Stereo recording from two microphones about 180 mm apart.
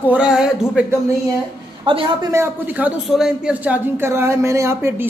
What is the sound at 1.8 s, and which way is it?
Speech, 30° right (ahead or behind).